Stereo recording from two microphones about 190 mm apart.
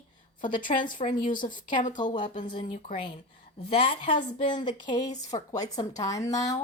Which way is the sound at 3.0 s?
30° left (ahead or behind).